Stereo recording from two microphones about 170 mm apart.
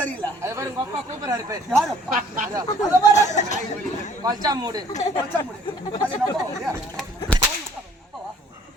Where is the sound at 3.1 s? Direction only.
45° left (ahead or behind).